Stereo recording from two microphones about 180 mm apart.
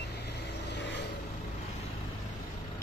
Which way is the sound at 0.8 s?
75° left (ahead or behind).